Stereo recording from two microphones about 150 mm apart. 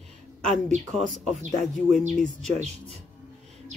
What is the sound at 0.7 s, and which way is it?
Speech, centre (ahead or behind).